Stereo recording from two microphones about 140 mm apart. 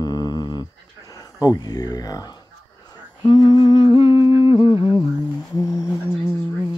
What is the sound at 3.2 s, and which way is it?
Humming, 30° left (ahead or behind).